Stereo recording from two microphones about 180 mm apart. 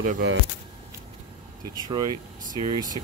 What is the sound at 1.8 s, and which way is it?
Speech, 20° right (ahead or behind).